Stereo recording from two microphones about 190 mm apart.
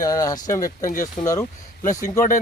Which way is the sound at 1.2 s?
40° left (ahead or behind).